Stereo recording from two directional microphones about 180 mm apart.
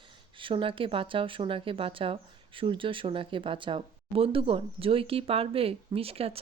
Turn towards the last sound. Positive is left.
turn(degrees=-30)  # may be behind; listen again after turning